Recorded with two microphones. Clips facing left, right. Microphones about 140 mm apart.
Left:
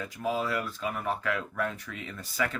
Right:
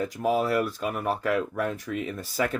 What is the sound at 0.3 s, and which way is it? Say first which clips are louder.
Speech: right 6 dB; 65° right (ahead or behind).